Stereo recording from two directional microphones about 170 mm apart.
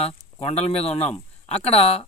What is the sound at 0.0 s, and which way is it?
A man's voice, 35° left (ahead or behind).